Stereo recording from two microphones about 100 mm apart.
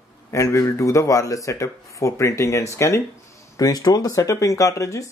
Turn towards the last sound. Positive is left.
turn(degrees=30)  # may be behind; listen again after turning